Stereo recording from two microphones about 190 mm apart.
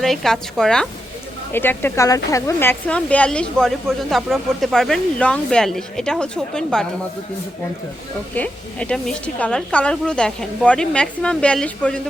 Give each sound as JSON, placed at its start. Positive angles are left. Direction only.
{"t": 0.0, "sound": "speech", "side_deg": 0}
{"t": 8.4, "sound": "speech", "side_deg": 5}